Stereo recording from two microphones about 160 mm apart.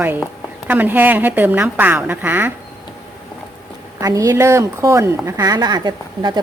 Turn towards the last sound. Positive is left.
turn(degrees=-25)  # may be behind; listen again after turning